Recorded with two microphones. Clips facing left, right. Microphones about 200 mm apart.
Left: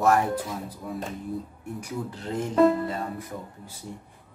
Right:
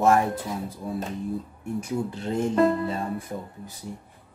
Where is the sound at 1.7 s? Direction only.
25° right (ahead or behind).